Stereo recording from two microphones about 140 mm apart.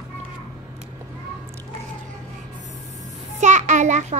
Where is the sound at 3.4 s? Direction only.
60° right (ahead or behind).